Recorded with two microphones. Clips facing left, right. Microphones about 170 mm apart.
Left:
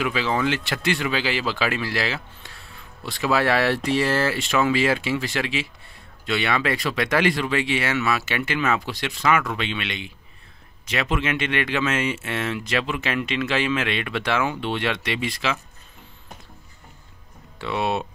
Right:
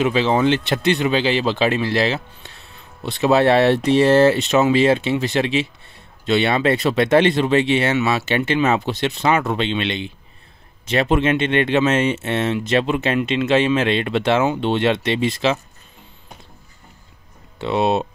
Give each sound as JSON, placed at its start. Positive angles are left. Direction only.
{"t": 0.0, "sound": "speech", "side_deg": -25}
{"t": 17.6, "sound": "speech", "side_deg": -25}